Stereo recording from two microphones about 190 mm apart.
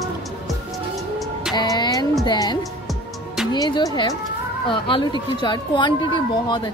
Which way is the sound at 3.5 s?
20° left (ahead or behind).